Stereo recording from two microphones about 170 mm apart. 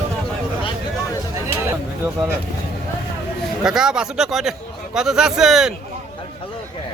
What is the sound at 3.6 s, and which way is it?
Speech, 5° right (ahead or behind).